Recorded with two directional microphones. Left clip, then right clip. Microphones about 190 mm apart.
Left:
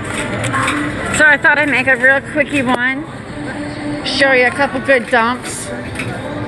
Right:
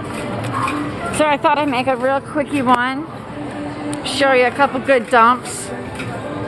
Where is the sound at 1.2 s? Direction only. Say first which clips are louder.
Left 6 dB; 25° right (ahead or behind).